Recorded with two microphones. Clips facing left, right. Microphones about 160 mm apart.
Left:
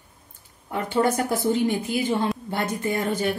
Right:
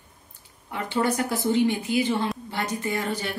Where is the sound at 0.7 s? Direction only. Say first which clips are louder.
Left 3 dB; 45° left (ahead or behind).